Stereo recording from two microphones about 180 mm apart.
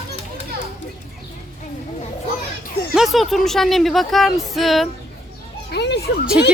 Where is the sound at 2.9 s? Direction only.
Centre (ahead or behind).